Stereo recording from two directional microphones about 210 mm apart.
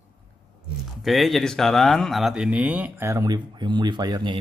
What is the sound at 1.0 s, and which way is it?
Speech, centre (ahead or behind).